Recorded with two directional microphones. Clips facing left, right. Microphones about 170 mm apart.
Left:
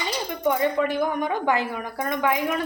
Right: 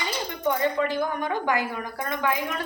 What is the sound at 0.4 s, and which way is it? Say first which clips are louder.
Speech: left 2 dB; 15° left (ahead or behind).